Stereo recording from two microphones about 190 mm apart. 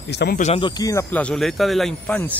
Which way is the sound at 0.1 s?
60° left (ahead or behind).